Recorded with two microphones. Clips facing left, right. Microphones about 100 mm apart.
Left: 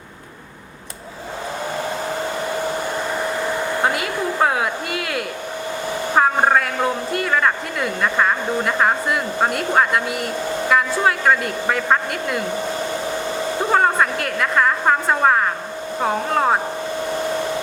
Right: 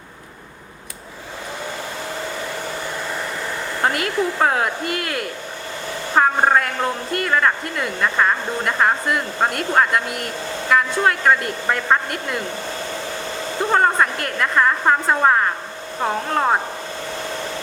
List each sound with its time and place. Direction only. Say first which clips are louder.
3.8 s speech: right 5 dB; centre (ahead or behind)
13.6 s a woman's voice: even; 5° left (ahead or behind)